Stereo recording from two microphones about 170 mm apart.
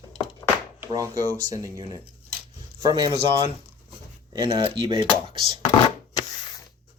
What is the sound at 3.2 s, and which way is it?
Speech, 40° left (ahead or behind).